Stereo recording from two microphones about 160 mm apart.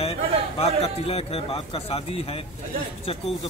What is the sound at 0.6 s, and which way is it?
Speech, 40° left (ahead or behind).